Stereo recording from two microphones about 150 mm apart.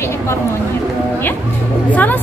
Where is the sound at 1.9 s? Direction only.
10° left (ahead or behind).